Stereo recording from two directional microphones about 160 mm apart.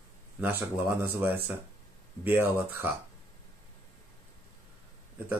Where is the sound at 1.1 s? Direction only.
15° right (ahead or behind).